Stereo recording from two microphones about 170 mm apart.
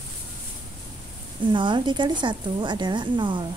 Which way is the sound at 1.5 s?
30° right (ahead or behind).